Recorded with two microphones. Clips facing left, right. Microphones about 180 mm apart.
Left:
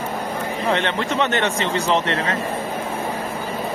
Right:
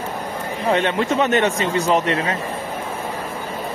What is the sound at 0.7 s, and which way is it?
Speech, 15° right (ahead or behind).